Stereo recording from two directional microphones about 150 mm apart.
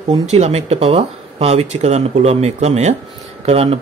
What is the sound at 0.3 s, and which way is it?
Speech, 45° right (ahead or behind).